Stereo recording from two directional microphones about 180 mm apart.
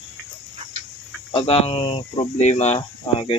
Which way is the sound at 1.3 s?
35° left (ahead or behind).